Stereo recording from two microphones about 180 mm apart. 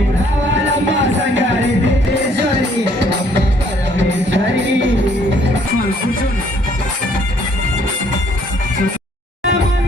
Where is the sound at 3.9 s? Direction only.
90° right.